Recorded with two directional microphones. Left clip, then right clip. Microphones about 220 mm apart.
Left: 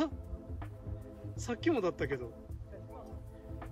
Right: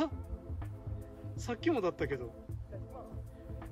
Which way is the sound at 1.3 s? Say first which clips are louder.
Left 1 dB; centre (ahead or behind).